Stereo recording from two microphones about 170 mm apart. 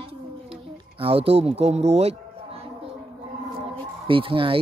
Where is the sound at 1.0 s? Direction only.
35° right (ahead or behind).